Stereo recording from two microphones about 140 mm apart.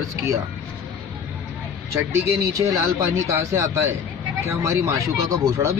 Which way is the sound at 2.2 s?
20° right (ahead or behind).